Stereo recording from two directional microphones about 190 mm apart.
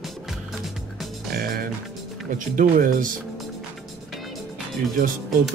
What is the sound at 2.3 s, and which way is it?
Speech, 45° right (ahead or behind).